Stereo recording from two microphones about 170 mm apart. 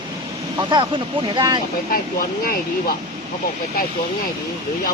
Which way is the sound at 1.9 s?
55° left (ahead or behind).